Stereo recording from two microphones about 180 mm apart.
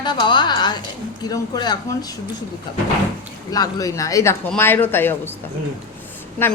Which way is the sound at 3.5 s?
20° left (ahead or behind).